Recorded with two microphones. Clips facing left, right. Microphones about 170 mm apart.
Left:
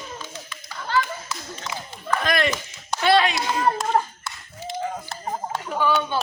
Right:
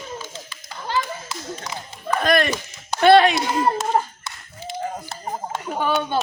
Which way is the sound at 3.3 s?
25° right (ahead or behind).